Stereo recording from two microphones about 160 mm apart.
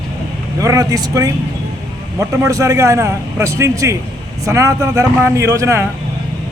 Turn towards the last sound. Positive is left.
turn(degrees=-20)  # may be behind; listen again after turning